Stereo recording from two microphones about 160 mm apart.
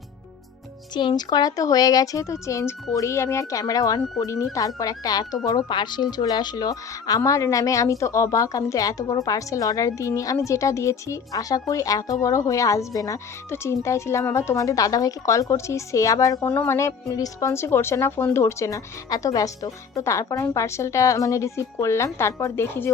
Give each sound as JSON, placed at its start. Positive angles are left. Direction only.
{"t": 0.9, "sound": "a woman's voice", "side_deg": 25}